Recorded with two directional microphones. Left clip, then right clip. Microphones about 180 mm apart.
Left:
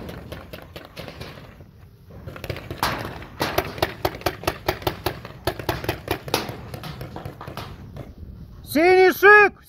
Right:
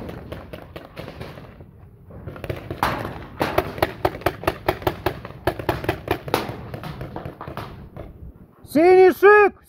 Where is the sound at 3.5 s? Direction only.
10° right (ahead or behind).